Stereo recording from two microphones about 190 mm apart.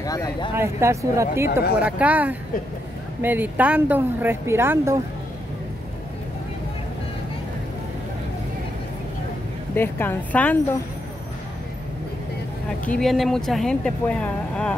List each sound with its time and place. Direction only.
0.0 s speech: 20° left (ahead or behind)
0.6 s speech: 15° right (ahead or behind)
9.8 s a woman's voice: 10° left (ahead or behind)
12.8 s speech: 5° left (ahead or behind)